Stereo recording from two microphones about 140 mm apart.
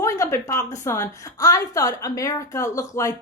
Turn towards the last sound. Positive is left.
turn(degrees=20)  # may be behind; listen again after turning